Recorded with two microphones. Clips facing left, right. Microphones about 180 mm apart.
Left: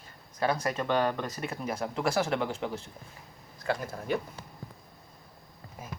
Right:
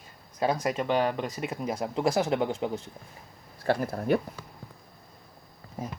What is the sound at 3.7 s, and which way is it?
Speech, 35° right (ahead or behind).